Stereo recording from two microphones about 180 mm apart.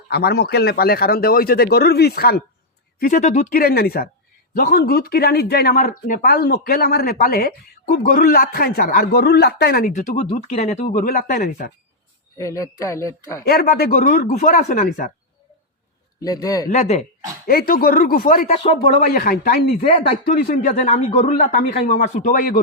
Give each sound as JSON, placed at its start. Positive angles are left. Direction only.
{"t": 0.1, "sound": "speech", "side_deg": 65}
{"t": 3.0, "sound": "speech", "side_deg": 45}
{"t": 10.2, "sound": "speech", "side_deg": 40}
{"t": 12.4, "sound": "speech", "side_deg": 20}
{"t": 13.4, "sound": "speech", "side_deg": 55}
{"t": 16.2, "sound": "a man's voice", "side_deg": 20}
{"t": 16.6, "sound": "speech", "side_deg": 40}
{"t": 17.4, "sound": "speech", "side_deg": 55}